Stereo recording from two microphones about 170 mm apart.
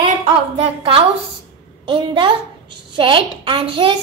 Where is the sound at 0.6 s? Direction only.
35° right (ahead or behind).